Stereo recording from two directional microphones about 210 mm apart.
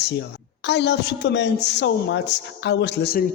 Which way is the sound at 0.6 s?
55° left (ahead or behind).